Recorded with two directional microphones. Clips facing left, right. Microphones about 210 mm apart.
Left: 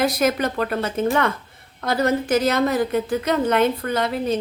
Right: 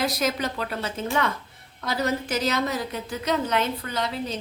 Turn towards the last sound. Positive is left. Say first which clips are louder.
# left 7 dB
turn(degrees=55)  # may be behind; listen again after turning